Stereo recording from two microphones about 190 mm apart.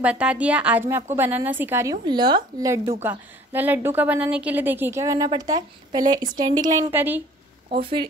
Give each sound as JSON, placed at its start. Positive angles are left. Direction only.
{"t": 0.0, "sound": "a woman's voice", "side_deg": -5}
{"t": 7.7, "sound": "speech", "side_deg": -25}